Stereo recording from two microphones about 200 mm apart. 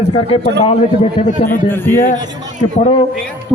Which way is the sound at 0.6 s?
30° left (ahead or behind).